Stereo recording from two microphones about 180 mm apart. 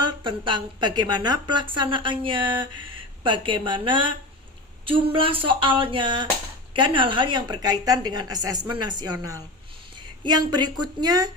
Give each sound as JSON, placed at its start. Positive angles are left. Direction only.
{"t": 0.0, "sound": "a woman's voice", "side_deg": -25}